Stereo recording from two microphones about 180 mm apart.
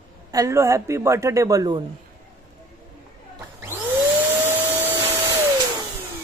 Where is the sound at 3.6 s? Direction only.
10° right (ahead or behind).